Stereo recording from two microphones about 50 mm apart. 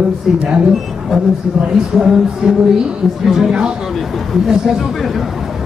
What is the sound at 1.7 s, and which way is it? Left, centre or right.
Speech, centre.